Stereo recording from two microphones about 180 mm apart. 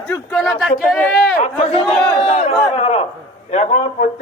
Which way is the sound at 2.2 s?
35° left (ahead or behind).